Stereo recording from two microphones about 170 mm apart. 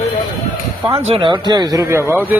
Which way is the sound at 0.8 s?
30° right (ahead or behind).